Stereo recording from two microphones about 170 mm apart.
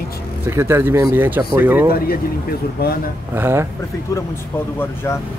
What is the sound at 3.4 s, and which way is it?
Speech, 15° right (ahead or behind).